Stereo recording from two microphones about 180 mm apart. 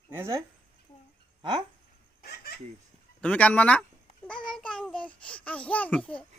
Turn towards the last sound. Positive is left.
turn(degrees=5)  # may be behind; listen again after turning